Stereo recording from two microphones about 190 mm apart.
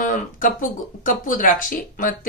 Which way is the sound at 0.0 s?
45° left (ahead or behind).